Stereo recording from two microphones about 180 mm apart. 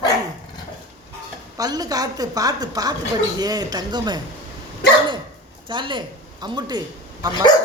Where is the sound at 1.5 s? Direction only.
20° right (ahead or behind).